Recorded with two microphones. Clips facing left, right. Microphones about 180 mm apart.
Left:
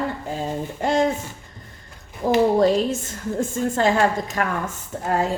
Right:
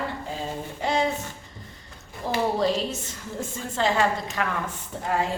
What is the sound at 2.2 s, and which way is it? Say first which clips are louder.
A woman's voice: left 7 dB; 50° left (ahead or behind).